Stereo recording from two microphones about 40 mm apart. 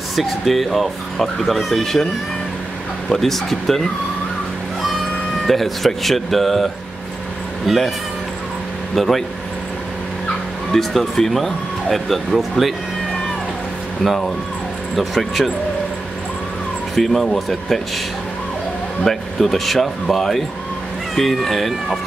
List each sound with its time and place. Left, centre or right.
0.1 s speech: centre
3.2 s speech: centre
5.5 s speech: centre
8.9 s speech: centre
10.7 s speech: centre
15.0 s speech: centre
16.9 s speech: centre
19.0 s speech: centre